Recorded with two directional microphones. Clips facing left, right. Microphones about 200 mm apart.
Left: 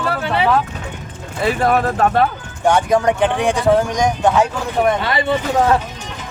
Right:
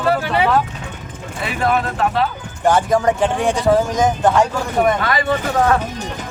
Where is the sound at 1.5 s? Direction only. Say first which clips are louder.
Even; 40° left (ahead or behind).